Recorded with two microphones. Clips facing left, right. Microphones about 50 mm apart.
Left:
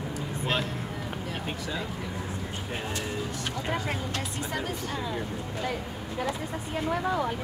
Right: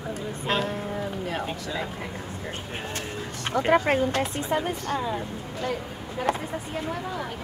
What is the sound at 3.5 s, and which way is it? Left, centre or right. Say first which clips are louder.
Speech: right 12 dB; right.